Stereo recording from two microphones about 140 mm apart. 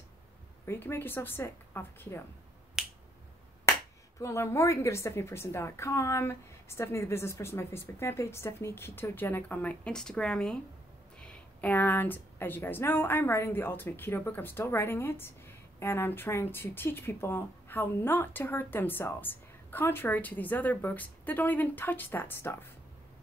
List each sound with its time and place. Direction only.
0.7 s speech: 15° left (ahead or behind)
2.8 s finger snapping: 5° right (ahead or behind)
4.2 s speech: 20° left (ahead or behind)